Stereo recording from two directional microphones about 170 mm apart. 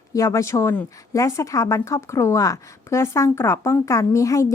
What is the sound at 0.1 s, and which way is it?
A woman's voice, 20° left (ahead or behind).